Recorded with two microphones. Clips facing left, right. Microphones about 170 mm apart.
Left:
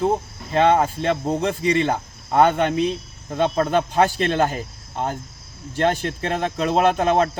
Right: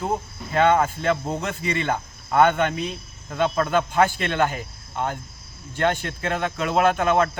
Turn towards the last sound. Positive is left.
turn(degrees=35)  # may be behind; listen again after turning